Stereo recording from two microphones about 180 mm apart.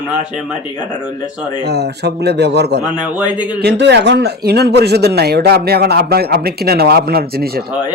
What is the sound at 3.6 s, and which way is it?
Speech, 70° right (ahead or behind).